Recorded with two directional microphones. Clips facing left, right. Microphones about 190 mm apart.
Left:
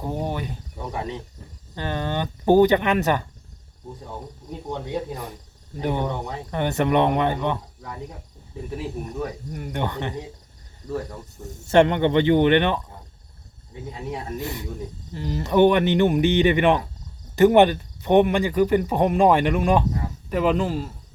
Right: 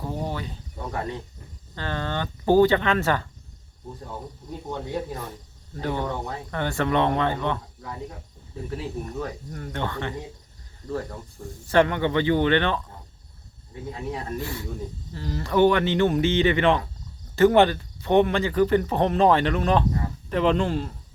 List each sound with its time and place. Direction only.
0.0 s speech: 15° left (ahead or behind)
5.7 s speech: 15° left (ahead or behind)
11.3 s speech: 25° left (ahead or behind)
14.1 s speech: 15° left (ahead or behind)